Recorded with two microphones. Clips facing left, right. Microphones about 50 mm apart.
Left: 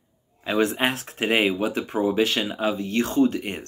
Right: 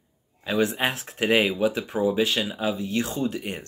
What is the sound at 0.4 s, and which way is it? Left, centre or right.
Speech, left.